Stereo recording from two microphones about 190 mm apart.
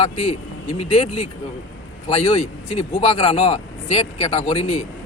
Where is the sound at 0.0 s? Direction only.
35° left (ahead or behind).